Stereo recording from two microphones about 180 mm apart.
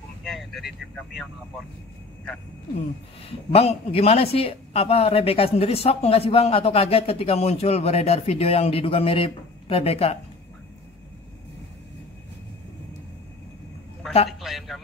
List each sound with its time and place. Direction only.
0.2 s speech: centre (ahead or behind)
3.3 s speech: 30° left (ahead or behind)
14.0 s a sound: centre (ahead or behind)
14.4 s speech: centre (ahead or behind)